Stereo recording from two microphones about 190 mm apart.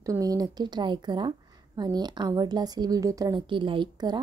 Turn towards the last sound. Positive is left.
turn(degrees=-25)  # may be behind; listen again after turning